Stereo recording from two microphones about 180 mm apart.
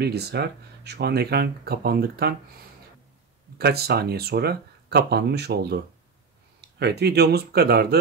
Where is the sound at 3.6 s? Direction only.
60° right (ahead or behind).